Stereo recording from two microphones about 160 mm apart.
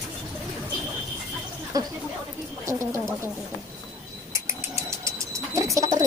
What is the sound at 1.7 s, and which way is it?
Speech, 20° right (ahead or behind).